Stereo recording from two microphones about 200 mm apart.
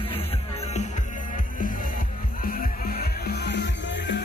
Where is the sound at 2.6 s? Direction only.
50° left (ahead or behind).